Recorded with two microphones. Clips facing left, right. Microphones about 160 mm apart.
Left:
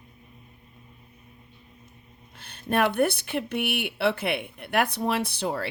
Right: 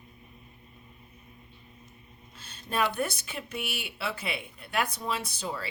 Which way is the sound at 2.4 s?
60° left (ahead or behind).